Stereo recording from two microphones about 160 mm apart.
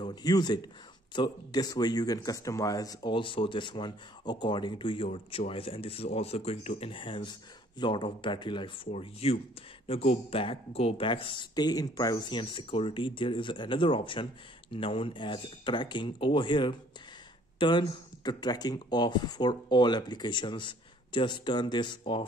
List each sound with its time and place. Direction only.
0.0 s speech: 25° left (ahead or behind)